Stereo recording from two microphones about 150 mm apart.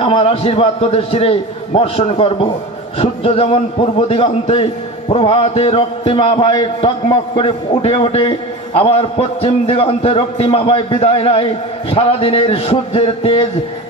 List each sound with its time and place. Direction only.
0.0 s a man's voice: 40° left (ahead or behind)